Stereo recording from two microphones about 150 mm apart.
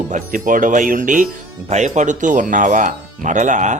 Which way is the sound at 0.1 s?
60° right (ahead or behind).